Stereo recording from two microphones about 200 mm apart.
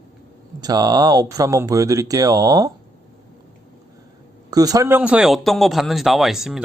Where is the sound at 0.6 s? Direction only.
20° right (ahead or behind).